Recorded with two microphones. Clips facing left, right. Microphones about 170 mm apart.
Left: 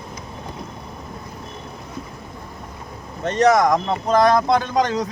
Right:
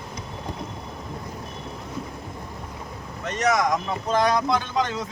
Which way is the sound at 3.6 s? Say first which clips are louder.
Left 6 dB; 65° left (ahead or behind).